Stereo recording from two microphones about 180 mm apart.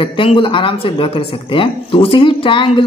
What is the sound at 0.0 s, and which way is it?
Speech, 30° left (ahead or behind).